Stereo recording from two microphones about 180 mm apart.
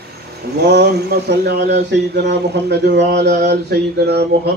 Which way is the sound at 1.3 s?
70° right (ahead or behind).